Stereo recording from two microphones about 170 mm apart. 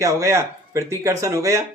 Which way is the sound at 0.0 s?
15° right (ahead or behind).